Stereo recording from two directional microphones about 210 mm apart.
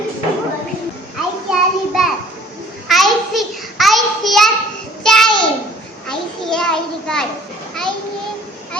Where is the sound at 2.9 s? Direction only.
Centre (ahead or behind).